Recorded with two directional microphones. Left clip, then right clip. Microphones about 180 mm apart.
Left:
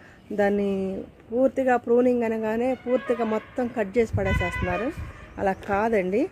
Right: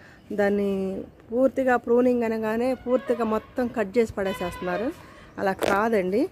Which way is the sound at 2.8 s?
20° right (ahead or behind).